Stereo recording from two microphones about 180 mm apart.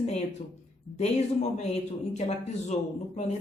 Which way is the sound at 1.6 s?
35° left (ahead or behind).